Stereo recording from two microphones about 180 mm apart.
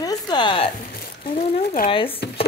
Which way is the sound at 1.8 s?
30° left (ahead or behind).